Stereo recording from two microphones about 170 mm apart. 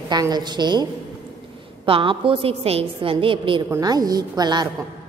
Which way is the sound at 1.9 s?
30° right (ahead or behind).